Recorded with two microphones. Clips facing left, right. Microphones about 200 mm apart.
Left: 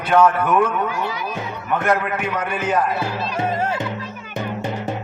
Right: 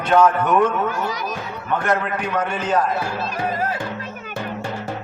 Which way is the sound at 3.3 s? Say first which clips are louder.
Left 3 dB; 25° left (ahead or behind).